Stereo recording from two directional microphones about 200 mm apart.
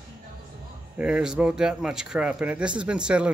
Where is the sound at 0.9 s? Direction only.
5° right (ahead or behind).